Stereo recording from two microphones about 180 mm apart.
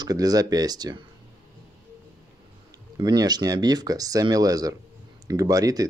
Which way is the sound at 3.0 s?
25° right (ahead or behind).